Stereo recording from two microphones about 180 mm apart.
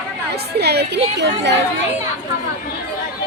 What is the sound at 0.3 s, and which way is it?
A woman's voice, 65° right (ahead or behind).